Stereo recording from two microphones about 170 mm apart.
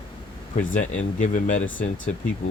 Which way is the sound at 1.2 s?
50° left (ahead or behind).